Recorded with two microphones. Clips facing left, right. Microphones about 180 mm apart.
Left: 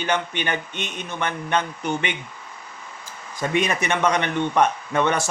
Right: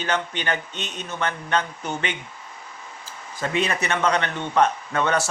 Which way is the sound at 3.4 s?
15° left (ahead or behind).